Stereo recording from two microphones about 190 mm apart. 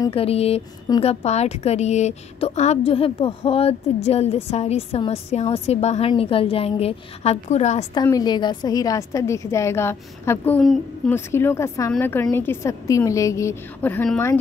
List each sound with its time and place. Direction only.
0.1 s a woman's voice: 30° left (ahead or behind)
7.9 s a woman's voice: 20° left (ahead or behind)